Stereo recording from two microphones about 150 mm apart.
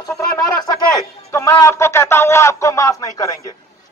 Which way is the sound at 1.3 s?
15° left (ahead or behind).